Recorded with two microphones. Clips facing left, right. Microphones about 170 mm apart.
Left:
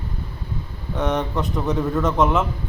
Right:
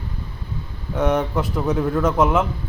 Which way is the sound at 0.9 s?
5° right (ahead or behind).